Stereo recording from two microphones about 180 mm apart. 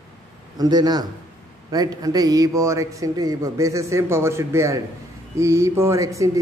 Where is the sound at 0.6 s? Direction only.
20° right (ahead or behind).